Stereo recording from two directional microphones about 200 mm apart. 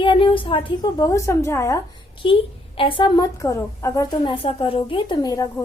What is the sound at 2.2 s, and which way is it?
A woman's voice, 25° left (ahead or behind).